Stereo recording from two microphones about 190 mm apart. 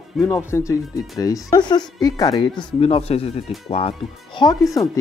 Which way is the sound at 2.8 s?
30° left (ahead or behind).